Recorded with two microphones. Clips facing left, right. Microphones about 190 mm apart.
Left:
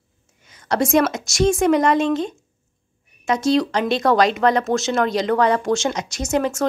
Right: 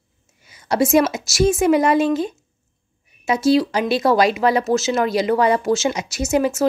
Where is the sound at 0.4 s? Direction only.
10° right (ahead or behind).